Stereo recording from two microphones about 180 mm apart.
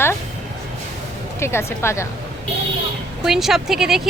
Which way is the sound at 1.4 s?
15° left (ahead or behind).